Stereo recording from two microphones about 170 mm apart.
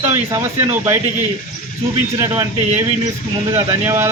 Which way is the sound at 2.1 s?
20° right (ahead or behind).